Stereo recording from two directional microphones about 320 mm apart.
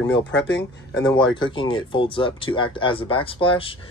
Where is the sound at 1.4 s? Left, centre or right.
Centre.